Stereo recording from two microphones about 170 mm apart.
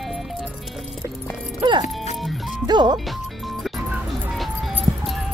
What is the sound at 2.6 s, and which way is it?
Speech, 25° right (ahead or behind).